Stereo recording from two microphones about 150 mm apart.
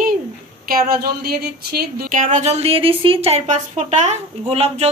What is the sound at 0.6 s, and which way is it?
Speech, 90° right.